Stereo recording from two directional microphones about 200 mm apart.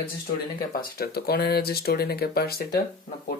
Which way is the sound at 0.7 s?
50° left (ahead or behind).